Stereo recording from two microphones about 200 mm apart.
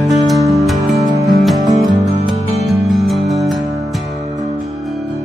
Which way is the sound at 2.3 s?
30° right (ahead or behind).